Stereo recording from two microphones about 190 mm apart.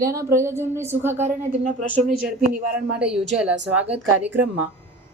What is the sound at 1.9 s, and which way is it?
Speech, 5° left (ahead or behind).